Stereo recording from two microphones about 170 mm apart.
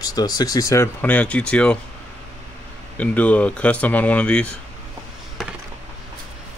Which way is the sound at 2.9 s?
10° left (ahead or behind).